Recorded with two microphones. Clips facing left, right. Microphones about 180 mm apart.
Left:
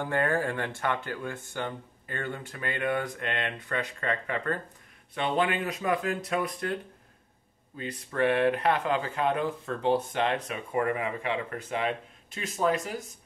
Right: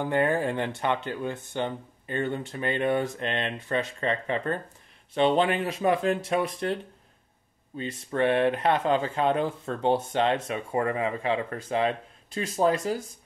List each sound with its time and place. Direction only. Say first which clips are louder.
0.0 s speech: right 3 dB; 20° right (ahead or behind)